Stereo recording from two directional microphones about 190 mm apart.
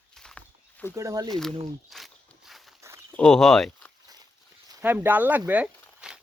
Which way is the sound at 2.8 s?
15° right (ahead or behind).